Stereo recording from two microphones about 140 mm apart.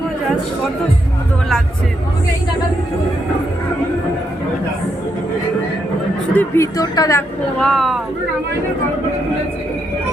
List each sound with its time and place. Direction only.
6.3 s speech: 15° left (ahead or behind)
7.6 s speech: centre (ahead or behind)